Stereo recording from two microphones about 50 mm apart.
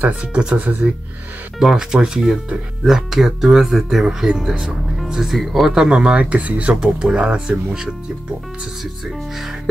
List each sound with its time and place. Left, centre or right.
0.3 s speech: right
1.6 s speech: centre
5.9 s speech: centre
6.7 s speech: centre